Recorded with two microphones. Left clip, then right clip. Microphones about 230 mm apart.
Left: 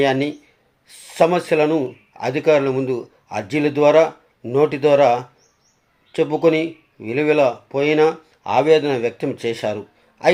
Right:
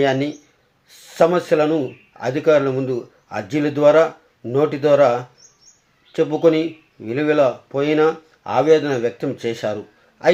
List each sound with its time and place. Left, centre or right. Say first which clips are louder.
0.0 s speech: even; centre